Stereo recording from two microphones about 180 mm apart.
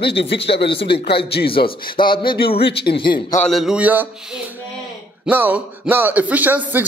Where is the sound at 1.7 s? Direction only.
25° left (ahead or behind).